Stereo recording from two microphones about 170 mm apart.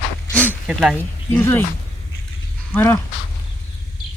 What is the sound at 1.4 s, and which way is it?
Speech, 10° left (ahead or behind).